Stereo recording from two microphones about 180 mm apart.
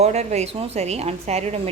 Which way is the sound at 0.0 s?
40° right (ahead or behind).